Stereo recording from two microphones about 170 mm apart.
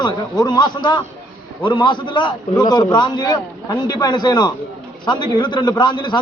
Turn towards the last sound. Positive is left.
turn(degrees=25)  # may be behind; listen again after turning